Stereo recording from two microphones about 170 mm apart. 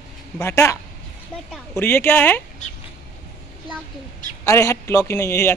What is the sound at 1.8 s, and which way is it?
Speech, 15° left (ahead or behind).